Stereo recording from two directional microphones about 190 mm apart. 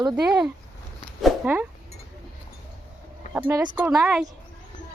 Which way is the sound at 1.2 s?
10° right (ahead or behind).